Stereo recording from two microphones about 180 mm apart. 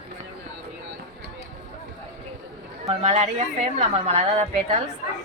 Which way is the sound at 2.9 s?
40° right (ahead or behind).